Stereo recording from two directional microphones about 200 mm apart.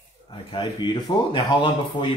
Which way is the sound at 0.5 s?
25° left (ahead or behind).